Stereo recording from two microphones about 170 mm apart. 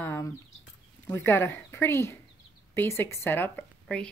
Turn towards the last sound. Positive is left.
turn(degrees=10)  # may be behind; listen again after turning